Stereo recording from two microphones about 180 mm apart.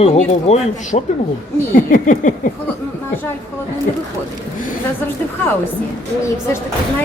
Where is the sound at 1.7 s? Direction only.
45° left (ahead or behind).